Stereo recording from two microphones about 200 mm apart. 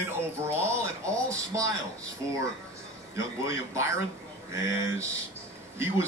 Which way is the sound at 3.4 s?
15° right (ahead or behind).